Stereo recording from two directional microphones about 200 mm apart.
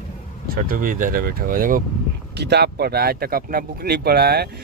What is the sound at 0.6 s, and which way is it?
Speech, 45° right (ahead or behind).